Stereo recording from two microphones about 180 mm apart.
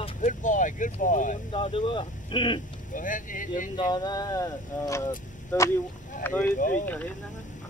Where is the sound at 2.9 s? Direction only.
45° left (ahead or behind).